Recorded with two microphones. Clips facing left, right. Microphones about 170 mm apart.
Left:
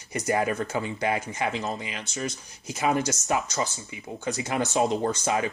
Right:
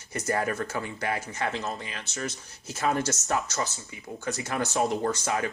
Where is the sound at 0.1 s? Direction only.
15° left (ahead or behind).